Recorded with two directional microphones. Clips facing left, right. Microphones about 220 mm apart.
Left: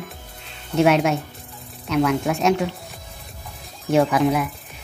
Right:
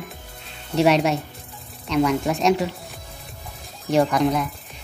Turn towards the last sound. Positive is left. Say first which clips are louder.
# left 1 dB
turn(degrees=5)  # may be behind; listen again after turning